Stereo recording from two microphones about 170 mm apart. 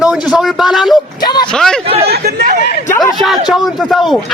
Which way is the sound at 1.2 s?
25° left (ahead or behind).